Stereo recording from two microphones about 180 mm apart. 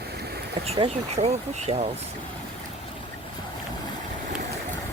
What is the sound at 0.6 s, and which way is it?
Speech, 35° right (ahead or behind).